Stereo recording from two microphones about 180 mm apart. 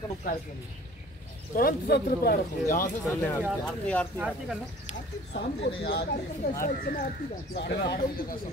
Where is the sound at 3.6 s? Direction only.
5° left (ahead or behind).